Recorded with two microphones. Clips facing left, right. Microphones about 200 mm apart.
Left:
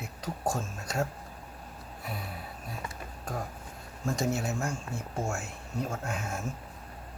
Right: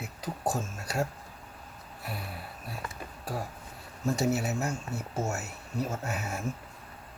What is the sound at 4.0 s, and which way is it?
Speech, 5° right (ahead or behind).